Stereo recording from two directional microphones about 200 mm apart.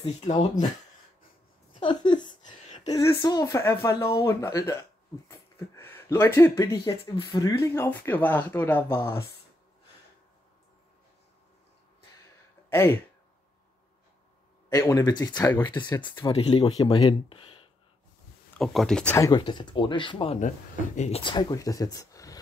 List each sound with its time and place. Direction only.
0.0 s speech: 35° left (ahead or behind)
1.7 s a sound: 25° left (ahead or behind)
2.8 s speech: 15° left (ahead or behind)
5.3 s a sound: 10° left (ahead or behind)
6.8 s speech: 25° left (ahead or behind)
12.6 s a sound: 10° left (ahead or behind)
14.7 s speech: 15° left (ahead or behind)
18.6 s speech: centre (ahead or behind)
19.1 s speech: 20° left (ahead or behind)
20.3 s speech: 40° left (ahead or behind)
21.2 s speech: 20° left (ahead or behind)